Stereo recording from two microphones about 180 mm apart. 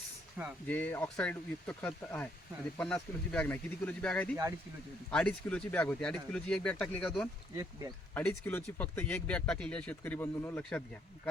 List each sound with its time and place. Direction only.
0.4 s speech: 10° right (ahead or behind)
0.7 s speech: 10° left (ahead or behind)
7.5 s speech: 20° right (ahead or behind)
8.1 s speech: 10° left (ahead or behind)